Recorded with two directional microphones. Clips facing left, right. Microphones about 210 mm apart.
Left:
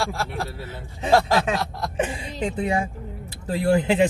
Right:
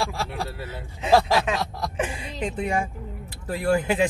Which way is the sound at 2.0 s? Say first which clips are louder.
Left 3 dB; 30° left (ahead or behind).